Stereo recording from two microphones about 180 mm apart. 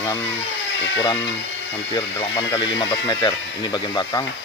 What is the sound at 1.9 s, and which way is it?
Speech, 25° left (ahead or behind).